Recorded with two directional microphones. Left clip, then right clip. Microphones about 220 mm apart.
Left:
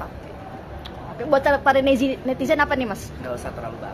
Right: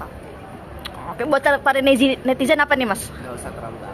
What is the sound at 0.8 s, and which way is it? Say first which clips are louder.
A woman's voice: right 5 dB; 20° right (ahead or behind).